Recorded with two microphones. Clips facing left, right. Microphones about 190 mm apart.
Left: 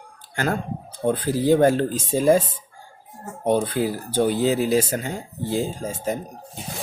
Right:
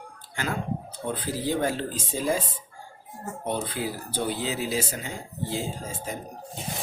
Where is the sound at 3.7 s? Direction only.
45° left (ahead or behind).